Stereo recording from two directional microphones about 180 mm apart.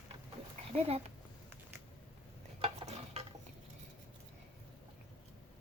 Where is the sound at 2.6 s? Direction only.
35° right (ahead or behind).